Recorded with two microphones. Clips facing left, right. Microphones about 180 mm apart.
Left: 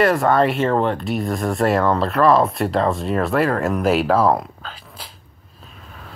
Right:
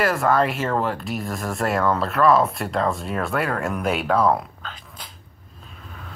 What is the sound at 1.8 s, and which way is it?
Speech, 25° left (ahead or behind).